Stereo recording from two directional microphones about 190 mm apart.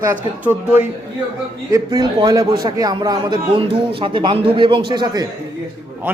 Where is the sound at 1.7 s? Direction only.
20° right (ahead or behind).